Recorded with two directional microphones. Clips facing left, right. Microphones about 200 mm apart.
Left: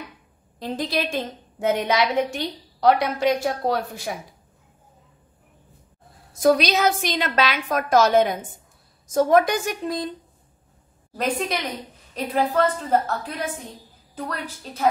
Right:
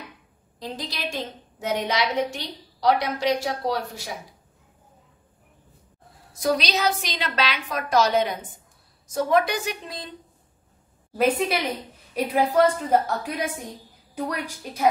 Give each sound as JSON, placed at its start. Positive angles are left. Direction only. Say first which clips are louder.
{"t": 0.6, "sound": "a woman's voice", "louder": "left 7 dB", "side_deg": 55}
{"t": 6.4, "sound": "a woman's voice", "louder": "left 5 dB", "side_deg": 50}
{"t": 11.1, "sound": "a woman's voice", "louder": "right 3 dB", "side_deg": -5}